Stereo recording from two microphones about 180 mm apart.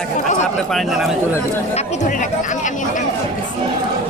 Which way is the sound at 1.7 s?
40° left (ahead or behind).